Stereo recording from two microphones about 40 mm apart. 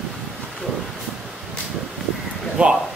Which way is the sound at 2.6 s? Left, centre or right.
Right.